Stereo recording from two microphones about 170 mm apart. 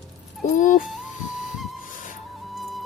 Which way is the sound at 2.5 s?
Centre (ahead or behind).